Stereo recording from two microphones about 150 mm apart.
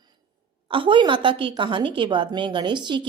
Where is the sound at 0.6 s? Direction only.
35° right (ahead or behind).